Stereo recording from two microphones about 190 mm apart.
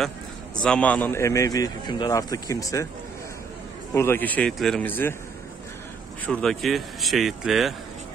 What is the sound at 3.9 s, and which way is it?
A man's voice, 15° left (ahead or behind).